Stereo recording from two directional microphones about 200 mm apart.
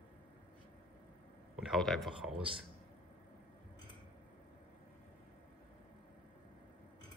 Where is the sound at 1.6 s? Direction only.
Centre (ahead or behind).